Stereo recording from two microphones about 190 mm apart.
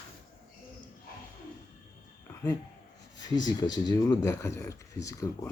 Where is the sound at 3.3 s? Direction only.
20° left (ahead or behind).